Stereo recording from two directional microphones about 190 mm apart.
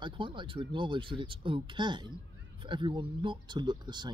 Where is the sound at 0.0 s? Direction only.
25° right (ahead or behind).